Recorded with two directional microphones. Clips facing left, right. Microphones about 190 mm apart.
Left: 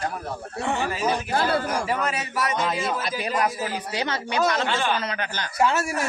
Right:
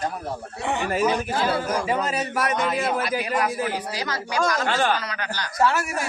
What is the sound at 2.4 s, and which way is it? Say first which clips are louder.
Speech: right 1 dB; 60° right (ahead or behind).